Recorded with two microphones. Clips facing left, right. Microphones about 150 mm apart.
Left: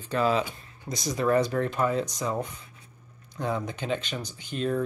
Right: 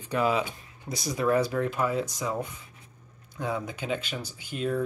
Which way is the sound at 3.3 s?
5° right (ahead or behind).